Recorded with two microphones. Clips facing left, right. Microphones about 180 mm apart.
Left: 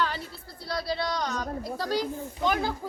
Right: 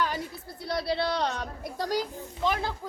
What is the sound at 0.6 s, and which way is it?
Speech, 25° right (ahead or behind).